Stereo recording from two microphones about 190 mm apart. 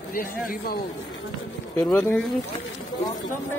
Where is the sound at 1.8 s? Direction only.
10° left (ahead or behind).